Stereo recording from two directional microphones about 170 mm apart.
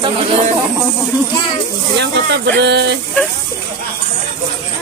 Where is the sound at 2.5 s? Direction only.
80° right.